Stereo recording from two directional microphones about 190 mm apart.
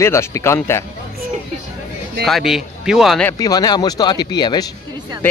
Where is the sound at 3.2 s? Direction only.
20° left (ahead or behind).